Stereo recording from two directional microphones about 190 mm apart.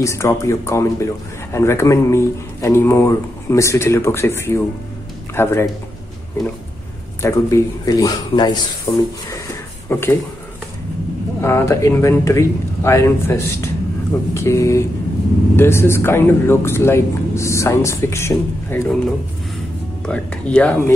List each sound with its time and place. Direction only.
0.0 s a man's voice: 15° left (ahead or behind)
7.2 s a man's voice: 15° left (ahead or behind)
11.4 s a man's voice: 15° left (ahead or behind)
20.1 s a man's voice: 5° left (ahead or behind)